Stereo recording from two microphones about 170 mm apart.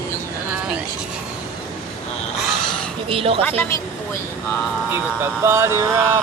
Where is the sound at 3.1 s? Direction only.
35° right (ahead or behind).